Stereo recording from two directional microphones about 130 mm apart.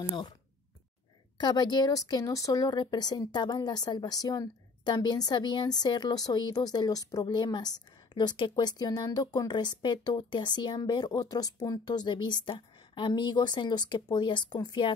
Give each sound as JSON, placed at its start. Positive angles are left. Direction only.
{"t": 1.4, "sound": "speech", "side_deg": 35}